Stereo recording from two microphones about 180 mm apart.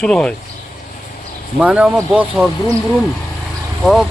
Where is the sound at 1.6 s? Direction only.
5° right (ahead or behind).